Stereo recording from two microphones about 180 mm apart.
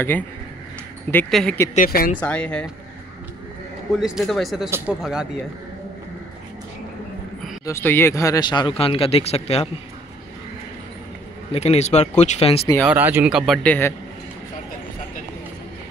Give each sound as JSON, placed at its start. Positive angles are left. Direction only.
{"t": 1.1, "sound": "speech", "side_deg": 5}
{"t": 1.8, "sound": "speech", "side_deg": 50}
{"t": 2.1, "sound": "speech", "side_deg": 5}
{"t": 3.9, "sound": "a man's voice", "side_deg": 0}
{"t": 4.6, "sound": "speech", "side_deg": -15}
{"t": 7.6, "sound": "speech", "side_deg": 15}
{"t": 11.5, "sound": "speech", "side_deg": 35}
{"t": 12.8, "sound": "speech", "side_deg": -10}
{"t": 13.6, "sound": "speech", "side_deg": 10}